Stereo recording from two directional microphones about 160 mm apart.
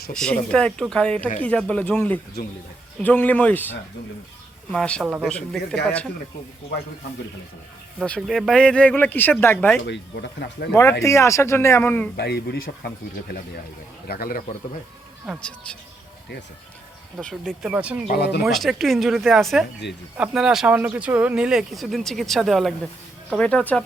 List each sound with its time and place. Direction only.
0.1 s speech: 5° left (ahead or behind)
5.0 s speech: 10° right (ahead or behind)
7.9 s speech: 5° left (ahead or behind)
9.8 s speech: 90° left
11.0 s speech: 20° left (ahead or behind)
12.1 s speech: 90° left; by 14.4 s 70° left (ahead or behind)
15.3 s speech: 5° left (ahead or behind)
17.2 s speech: 5° left (ahead or behind)
18.1 s speech: 90° left
18.4 s speech: centre (ahead or behind)
19.8 s speech: 90° left
20.1 s speech: 5° right (ahead or behind)